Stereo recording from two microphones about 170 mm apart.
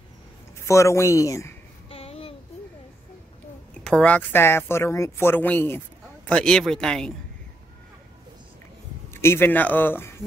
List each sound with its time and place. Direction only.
0.7 s speech: 15° left (ahead or behind)
1.9 s child singing: 35° left (ahead or behind)
3.8 s a man's voice: 5° left (ahead or behind)
9.1 s speech: 15° left (ahead or behind)